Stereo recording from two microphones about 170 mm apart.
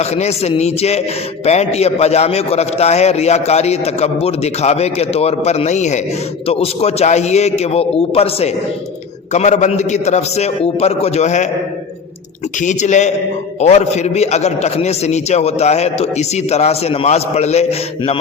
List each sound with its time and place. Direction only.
0.0 s a man's voice: 40° left (ahead or behind)
12.5 s a man's voice: 45° left (ahead or behind)